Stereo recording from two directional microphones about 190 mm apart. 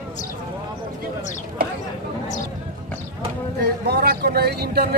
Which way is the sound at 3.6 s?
55° right (ahead or behind).